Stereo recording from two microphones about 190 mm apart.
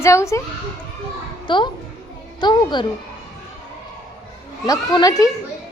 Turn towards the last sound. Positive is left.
turn(degrees=20)  # may be behind; listen again after turning